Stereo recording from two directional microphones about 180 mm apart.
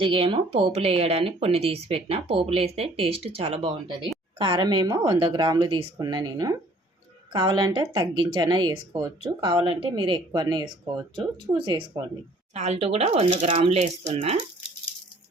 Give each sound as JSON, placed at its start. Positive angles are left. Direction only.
{"t": 0.0, "sound": "speech", "side_deg": -30}